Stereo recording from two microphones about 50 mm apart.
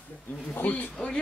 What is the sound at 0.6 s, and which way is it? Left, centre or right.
Speech, left.